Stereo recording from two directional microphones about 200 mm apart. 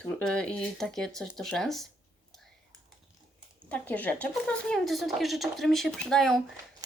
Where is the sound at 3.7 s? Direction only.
10° left (ahead or behind).